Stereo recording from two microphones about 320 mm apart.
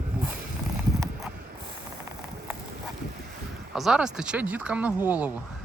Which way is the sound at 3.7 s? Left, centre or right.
Centre.